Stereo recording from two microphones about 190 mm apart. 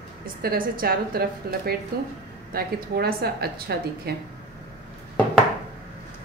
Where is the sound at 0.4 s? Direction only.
50° right (ahead or behind).